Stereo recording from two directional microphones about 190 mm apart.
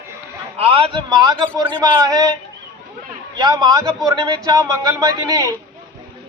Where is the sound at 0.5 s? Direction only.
30° right (ahead or behind).